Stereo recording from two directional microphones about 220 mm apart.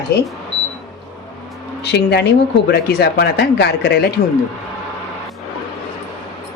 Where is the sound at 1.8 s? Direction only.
50° left (ahead or behind).